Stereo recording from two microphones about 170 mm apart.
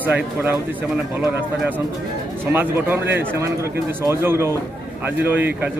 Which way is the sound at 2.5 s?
10° right (ahead or behind).